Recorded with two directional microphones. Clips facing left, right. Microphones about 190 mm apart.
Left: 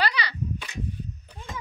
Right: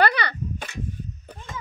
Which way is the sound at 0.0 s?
55° right (ahead or behind).